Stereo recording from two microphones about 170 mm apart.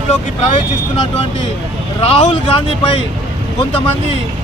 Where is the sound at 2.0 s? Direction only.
35° left (ahead or behind).